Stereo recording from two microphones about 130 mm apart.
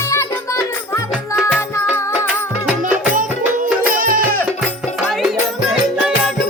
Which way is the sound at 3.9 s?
90° right.